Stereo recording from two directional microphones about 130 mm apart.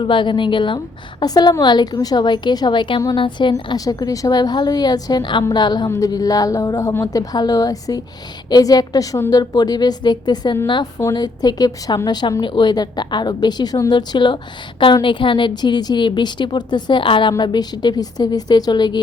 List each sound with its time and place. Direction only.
0.0 s a woman's voice: 40° left (ahead or behind)